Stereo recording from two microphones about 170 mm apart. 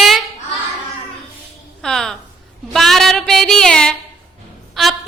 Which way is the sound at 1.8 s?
5° left (ahead or behind).